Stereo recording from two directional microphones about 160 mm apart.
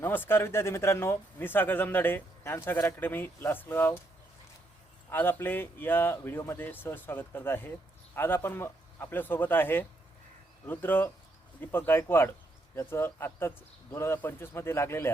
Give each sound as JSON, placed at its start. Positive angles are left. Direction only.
{"t": 0.0, "sound": "speech", "side_deg": 15}
{"t": 5.0, "sound": "speech", "side_deg": 15}